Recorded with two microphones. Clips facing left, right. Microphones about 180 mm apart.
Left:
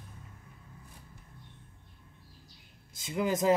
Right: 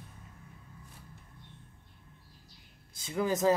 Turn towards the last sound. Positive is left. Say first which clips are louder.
# even
turn(degrees=15)  # may be behind; listen again after turning